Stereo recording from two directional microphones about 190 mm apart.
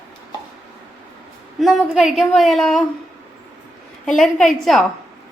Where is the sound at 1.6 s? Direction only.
Centre (ahead or behind).